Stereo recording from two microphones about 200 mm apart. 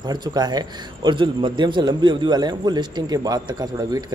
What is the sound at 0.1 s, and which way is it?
A man's voice, 20° right (ahead or behind).